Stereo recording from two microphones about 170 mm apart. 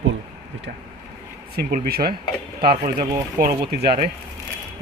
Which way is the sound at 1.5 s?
60° right (ahead or behind).